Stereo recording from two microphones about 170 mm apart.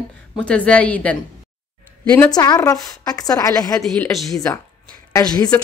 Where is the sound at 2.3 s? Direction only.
20° left (ahead or behind).